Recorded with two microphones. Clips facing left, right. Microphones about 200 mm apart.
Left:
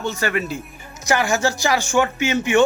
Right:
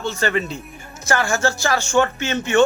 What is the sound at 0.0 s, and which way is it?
Speech, 10° left (ahead or behind).